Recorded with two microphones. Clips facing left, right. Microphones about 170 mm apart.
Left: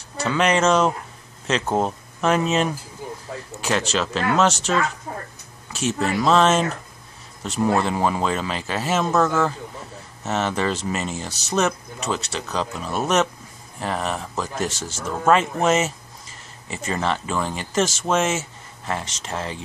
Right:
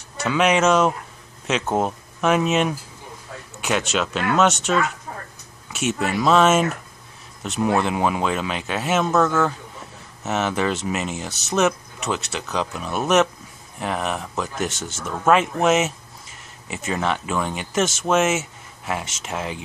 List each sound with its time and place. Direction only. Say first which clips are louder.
0.2 s speech: right 1 dB; 5° right (ahead or behind)